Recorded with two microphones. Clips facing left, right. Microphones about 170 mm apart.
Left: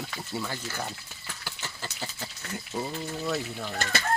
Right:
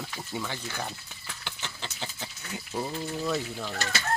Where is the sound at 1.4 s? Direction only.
5° left (ahead or behind).